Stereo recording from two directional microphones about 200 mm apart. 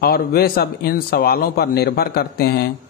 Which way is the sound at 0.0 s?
50° left (ahead or behind).